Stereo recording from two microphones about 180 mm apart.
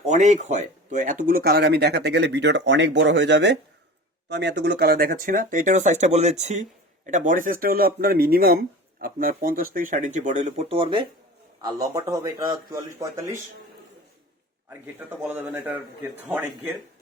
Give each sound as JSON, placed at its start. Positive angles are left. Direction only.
{"t": 0.0, "sound": "speech", "side_deg": -40}
{"t": 11.6, "sound": "speech", "side_deg": -20}
{"t": 14.7, "sound": "speech", "side_deg": -10}